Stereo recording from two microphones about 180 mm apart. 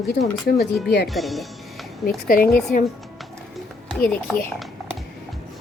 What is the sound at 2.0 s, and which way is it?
Speech, 50° left (ahead or behind).